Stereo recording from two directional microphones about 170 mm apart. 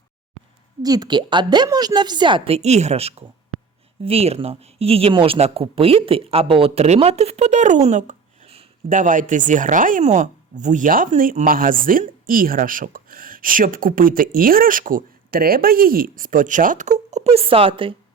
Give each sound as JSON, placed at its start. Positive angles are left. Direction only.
{"t": 0.8, "sound": "a woman's voice", "side_deg": -20}